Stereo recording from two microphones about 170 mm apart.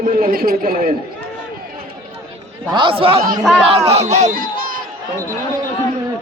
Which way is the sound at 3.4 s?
Centre (ahead or behind).